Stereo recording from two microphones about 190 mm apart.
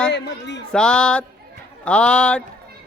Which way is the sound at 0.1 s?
65° left (ahead or behind).